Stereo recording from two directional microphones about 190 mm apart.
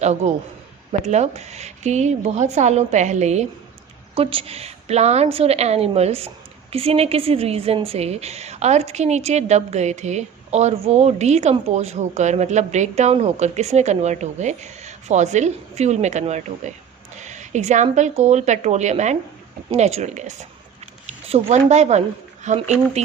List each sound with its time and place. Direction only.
0.0 s a woman's voice: 35° right (ahead or behind)